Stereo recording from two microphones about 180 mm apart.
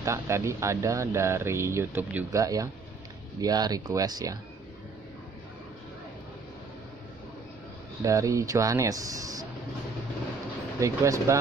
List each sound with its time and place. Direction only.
0.0 s speech: 15° right (ahead or behind)
8.0 s speech: 20° right (ahead or behind)
10.8 s speech: 15° right (ahead or behind)